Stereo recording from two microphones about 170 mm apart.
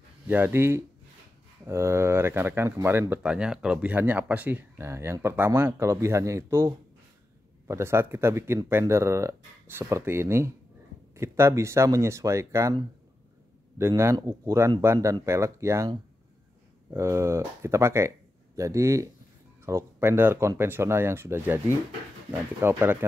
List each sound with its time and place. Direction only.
0.3 s speech: 10° right (ahead or behind)
13.7 s speech: 15° right (ahead or behind)
16.9 s speech: 15° right (ahead or behind)